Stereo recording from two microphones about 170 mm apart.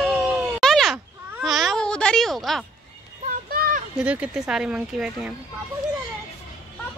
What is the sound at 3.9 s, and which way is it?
Speech, 5° right (ahead or behind).